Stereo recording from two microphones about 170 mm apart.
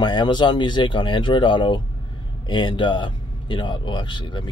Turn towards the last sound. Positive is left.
turn(degrees=25)  # may be behind; listen again after turning